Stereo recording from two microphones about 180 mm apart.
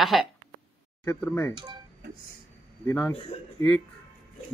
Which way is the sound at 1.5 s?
25° right (ahead or behind).